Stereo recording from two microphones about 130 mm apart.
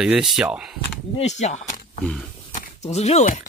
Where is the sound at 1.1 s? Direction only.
60° left (ahead or behind).